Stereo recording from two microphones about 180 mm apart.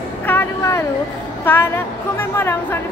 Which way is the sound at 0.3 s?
15° left (ahead or behind).